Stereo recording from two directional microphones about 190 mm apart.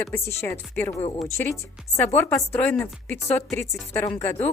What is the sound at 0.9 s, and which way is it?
Speech, 30° left (ahead or behind).